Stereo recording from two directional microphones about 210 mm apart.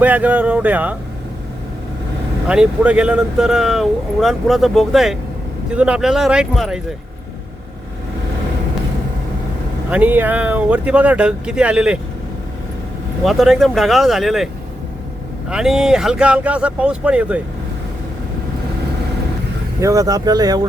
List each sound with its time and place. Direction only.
0.0 s speech: 5° right (ahead or behind)
2.5 s speech: 5° right (ahead or behind)
9.9 s speech: 10° right (ahead or behind)
13.2 s speech: centre (ahead or behind)
19.8 s speech: 15° right (ahead or behind)